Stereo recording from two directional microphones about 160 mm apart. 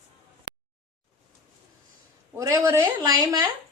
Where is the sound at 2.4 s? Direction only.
20° right (ahead or behind).